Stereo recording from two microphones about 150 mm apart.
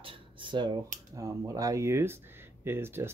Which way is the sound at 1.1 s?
20° right (ahead or behind).